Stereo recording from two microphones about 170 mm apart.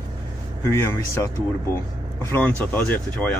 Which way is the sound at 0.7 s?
15° left (ahead or behind).